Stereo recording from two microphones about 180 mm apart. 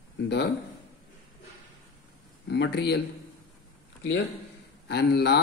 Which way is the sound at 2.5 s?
70° left (ahead or behind).